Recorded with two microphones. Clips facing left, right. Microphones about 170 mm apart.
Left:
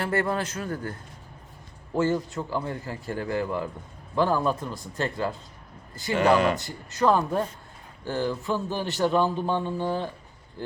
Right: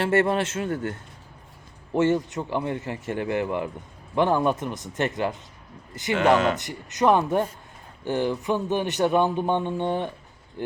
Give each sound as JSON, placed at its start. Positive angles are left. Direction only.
{"t": 0.0, "sound": "speech", "side_deg": -25}